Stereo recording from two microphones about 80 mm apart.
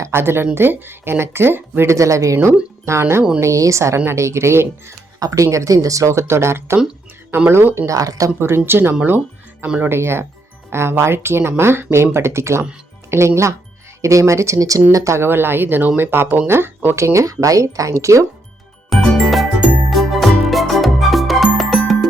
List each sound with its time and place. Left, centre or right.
0.0 s a woman's voice: right
7.9 s speech: right
8.4 s speech: right
9.0 s music: right
9.6 s speech: centre
9.9 s a woman's voice: right
18.9 s music: centre